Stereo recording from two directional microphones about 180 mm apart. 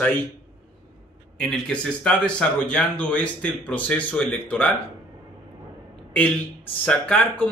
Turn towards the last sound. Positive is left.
turn(degrees=10)  # may be behind; listen again after turning